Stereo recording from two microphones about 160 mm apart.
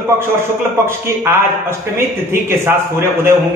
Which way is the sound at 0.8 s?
15° right (ahead or behind).